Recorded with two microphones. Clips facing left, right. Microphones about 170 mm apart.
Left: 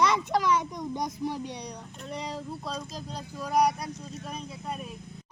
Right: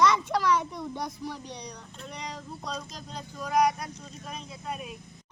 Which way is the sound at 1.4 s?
60° left (ahead or behind).